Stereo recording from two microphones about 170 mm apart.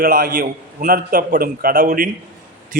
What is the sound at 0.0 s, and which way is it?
A man's voice, 60° right (ahead or behind).